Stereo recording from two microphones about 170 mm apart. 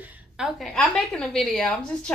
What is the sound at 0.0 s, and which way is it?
A woman's voice, 5° right (ahead or behind).